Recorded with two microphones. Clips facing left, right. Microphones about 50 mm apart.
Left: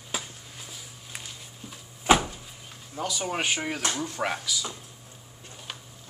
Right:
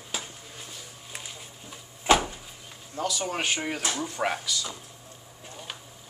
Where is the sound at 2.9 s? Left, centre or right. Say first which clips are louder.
Even; centre.